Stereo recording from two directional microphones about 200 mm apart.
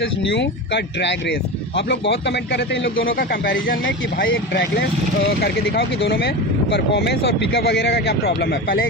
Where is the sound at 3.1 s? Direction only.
50° left (ahead or behind).